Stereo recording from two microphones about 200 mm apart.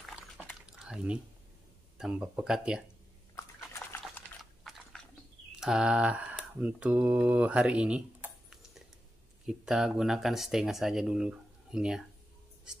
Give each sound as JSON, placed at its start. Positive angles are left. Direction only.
{"t": 0.6, "sound": "drip", "side_deg": -5}
{"t": 2.0, "sound": "speech", "side_deg": -5}
{"t": 3.3, "sound": "a sound", "side_deg": 10}
{"t": 4.0, "sound": "typing", "side_deg": 0}
{"t": 5.6, "sound": "speech", "side_deg": -5}
{"t": 9.5, "sound": "speech", "side_deg": 0}